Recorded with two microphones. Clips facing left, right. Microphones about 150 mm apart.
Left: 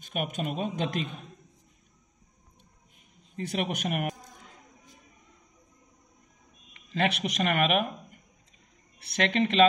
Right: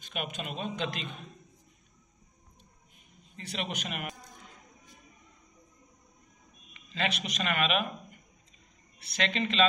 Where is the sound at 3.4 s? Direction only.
50° left (ahead or behind).